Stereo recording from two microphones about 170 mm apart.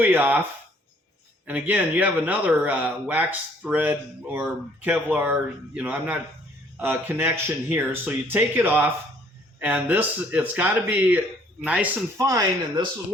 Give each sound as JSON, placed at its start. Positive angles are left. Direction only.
{"t": 0.0, "sound": "speech", "side_deg": -10}
{"t": 1.5, "sound": "speech", "side_deg": -10}
{"t": 12.1, "sound": "speech", "side_deg": -20}